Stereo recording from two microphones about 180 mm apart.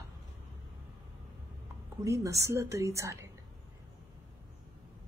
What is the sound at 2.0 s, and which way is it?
Speech, 15° right (ahead or behind).